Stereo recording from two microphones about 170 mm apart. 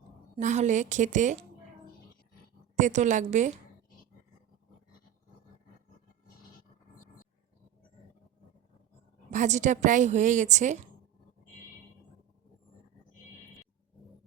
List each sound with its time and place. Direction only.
0.3 s a woman's voice: 45° right (ahead or behind)
2.7 s a woman's voice: 45° right (ahead or behind)
9.3 s a woman's voice: 45° right (ahead or behind)